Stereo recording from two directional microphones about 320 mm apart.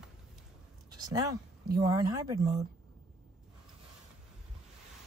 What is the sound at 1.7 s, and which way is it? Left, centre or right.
Speech, centre.